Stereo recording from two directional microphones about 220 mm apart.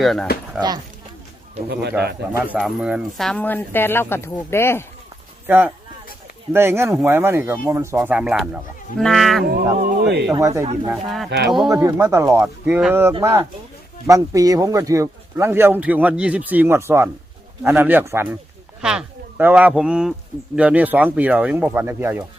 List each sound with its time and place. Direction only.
0.0 s speech: centre (ahead or behind)
2.3 s speech: 5° right (ahead or behind); by 4.9 s 10° left (ahead or behind)
5.5 s speech: 10° right (ahead or behind)
9.7 s speech: 45° right (ahead or behind)
10.3 s speech: 15° right (ahead or behind)
10.8 s speech: centre (ahead or behind)
11.3 s speech: 50° right (ahead or behind)
11.7 s speech: 15° right (ahead or behind)